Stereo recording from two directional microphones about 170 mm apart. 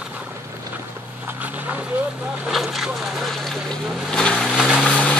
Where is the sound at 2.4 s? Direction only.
Centre (ahead or behind).